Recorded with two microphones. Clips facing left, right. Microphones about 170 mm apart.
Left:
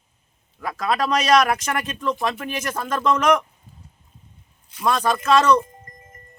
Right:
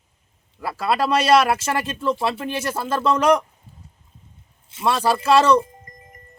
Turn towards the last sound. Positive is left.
turn(degrees=-15)  # may be behind; listen again after turning